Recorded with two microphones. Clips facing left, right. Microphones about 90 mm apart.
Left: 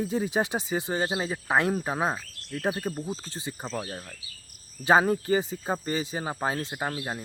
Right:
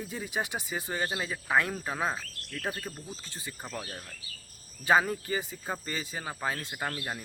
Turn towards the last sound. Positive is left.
turn(degrees=20)  # may be behind; listen again after turning